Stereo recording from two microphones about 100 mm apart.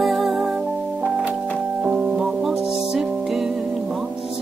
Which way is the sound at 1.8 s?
5° right (ahead or behind).